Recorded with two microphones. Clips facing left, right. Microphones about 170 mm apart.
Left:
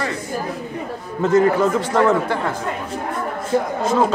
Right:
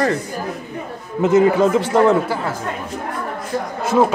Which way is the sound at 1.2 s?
20° right (ahead or behind).